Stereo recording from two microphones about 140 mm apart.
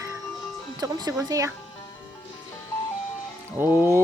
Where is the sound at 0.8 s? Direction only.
30° right (ahead or behind).